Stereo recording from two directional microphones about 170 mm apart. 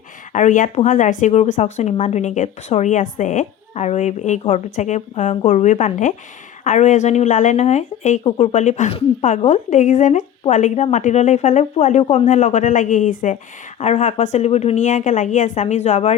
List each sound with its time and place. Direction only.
0.3 s a woman's voice: 50° left (ahead or behind)
13.7 s a woman's voice: 40° left (ahead or behind)